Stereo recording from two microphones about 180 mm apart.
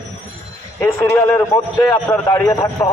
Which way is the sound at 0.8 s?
15° left (ahead or behind).